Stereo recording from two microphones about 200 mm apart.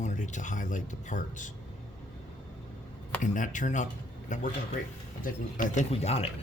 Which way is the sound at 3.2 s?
40° left (ahead or behind).